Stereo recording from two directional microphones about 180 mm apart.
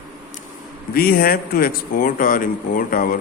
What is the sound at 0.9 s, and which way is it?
Speech, 55° left (ahead or behind).